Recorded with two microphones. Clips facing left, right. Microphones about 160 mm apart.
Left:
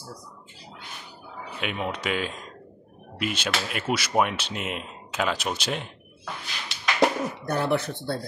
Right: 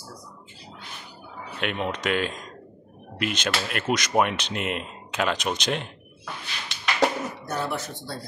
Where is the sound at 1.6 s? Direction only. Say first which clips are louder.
Right 2 dB; 5° left (ahead or behind).